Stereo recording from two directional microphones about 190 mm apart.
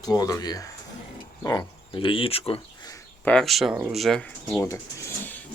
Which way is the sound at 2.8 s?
15° left (ahead or behind).